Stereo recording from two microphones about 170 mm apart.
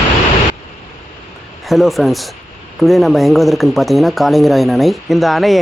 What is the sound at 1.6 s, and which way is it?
Speech, centre (ahead or behind).